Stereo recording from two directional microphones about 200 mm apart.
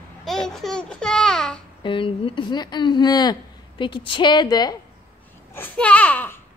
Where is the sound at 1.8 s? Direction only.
25° left (ahead or behind).